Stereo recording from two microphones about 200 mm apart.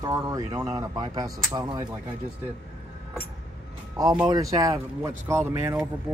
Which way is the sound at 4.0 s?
20° right (ahead or behind).